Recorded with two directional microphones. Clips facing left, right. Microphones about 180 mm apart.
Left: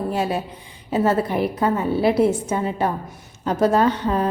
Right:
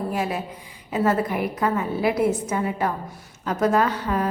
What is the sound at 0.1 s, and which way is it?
Speech, 30° left (ahead or behind).